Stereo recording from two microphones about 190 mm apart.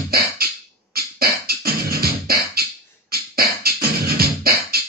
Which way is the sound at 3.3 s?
55° right (ahead or behind).